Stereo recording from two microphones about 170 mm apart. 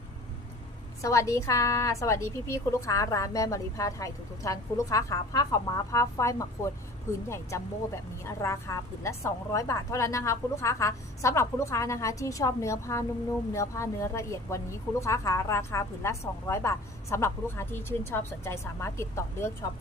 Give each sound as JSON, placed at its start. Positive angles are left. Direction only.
{"t": 1.0, "sound": "a woman's voice", "side_deg": 20}